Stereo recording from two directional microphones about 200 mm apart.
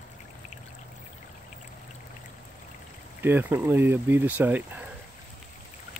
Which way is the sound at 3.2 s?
10° right (ahead or behind).